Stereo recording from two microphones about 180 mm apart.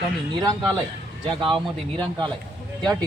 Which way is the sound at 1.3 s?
25° right (ahead or behind).